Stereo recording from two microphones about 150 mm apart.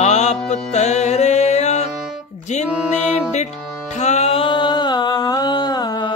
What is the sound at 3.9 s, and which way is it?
Music, 50° left (ahead or behind).